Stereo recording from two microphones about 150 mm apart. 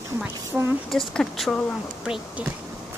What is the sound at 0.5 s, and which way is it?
Speech, 5° right (ahead or behind).